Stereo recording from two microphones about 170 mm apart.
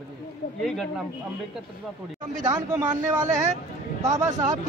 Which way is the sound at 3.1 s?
20° right (ahead or behind).